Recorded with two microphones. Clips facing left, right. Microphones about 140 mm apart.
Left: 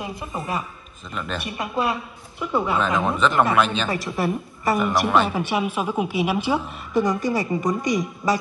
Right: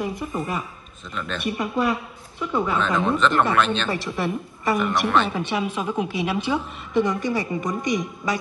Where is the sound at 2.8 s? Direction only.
5° left (ahead or behind).